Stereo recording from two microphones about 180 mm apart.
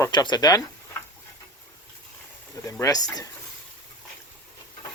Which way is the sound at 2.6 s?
15° left (ahead or behind).